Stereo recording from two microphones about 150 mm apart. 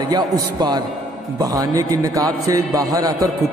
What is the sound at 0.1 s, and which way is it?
A man's voice, 30° right (ahead or behind).